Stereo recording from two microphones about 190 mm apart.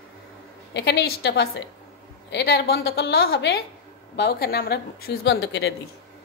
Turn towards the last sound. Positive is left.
turn(degrees=60)  # may be behind; listen again after turning